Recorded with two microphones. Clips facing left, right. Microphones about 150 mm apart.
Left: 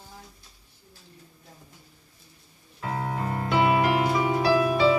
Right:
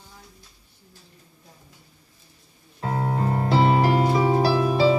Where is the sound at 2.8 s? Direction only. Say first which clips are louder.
Right 4 dB; 35° right (ahead or behind).